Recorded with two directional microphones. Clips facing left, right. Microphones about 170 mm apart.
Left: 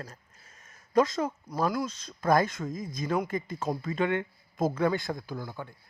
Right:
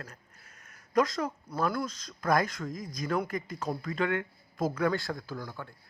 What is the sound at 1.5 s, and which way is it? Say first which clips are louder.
Speech: left 1 dB; 10° left (ahead or behind).